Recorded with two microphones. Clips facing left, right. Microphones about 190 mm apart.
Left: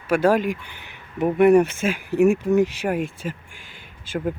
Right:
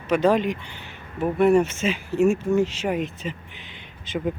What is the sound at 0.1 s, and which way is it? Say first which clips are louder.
Speech: left 1 dB; 10° left (ahead or behind).